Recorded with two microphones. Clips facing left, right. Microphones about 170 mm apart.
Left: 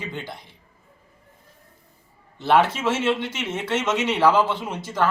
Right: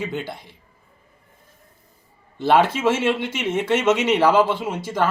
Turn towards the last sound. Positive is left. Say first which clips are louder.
# right 4 dB
turn(degrees=-10)  # may be behind; listen again after turning